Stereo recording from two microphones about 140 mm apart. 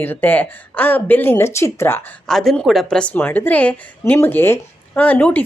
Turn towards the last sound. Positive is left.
turn(degrees=10)  # may be behind; listen again after turning